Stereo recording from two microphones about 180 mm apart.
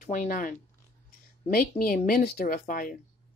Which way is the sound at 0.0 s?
45° left (ahead or behind).